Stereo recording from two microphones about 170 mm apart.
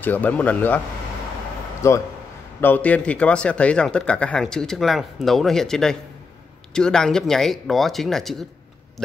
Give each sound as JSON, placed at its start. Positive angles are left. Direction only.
{"t": 0.0, "sound": "speech", "side_deg": 10}
{"t": 1.8, "sound": "speech", "side_deg": 15}